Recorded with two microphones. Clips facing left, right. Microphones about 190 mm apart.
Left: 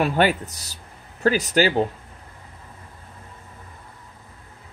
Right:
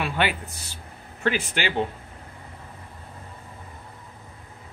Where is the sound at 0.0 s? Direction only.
40° left (ahead or behind).